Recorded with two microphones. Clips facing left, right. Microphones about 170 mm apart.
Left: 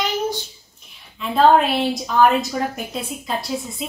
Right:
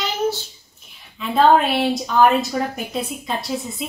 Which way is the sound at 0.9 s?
Centre (ahead or behind).